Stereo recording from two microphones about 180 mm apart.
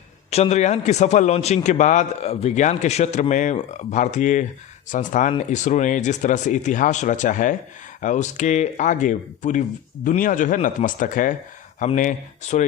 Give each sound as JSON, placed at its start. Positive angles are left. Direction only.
{"t": 0.3, "sound": "a man's voice", "side_deg": 35}